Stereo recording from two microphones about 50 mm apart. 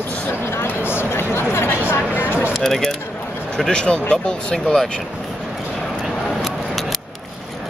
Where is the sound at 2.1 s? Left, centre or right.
Left.